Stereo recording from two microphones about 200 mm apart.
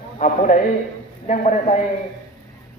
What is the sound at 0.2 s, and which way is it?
Speech, 40° left (ahead or behind).